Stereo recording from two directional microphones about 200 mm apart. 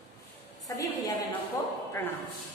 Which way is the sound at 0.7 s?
20° left (ahead or behind).